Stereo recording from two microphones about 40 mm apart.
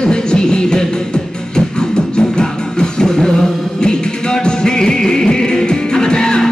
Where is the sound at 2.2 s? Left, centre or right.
Left.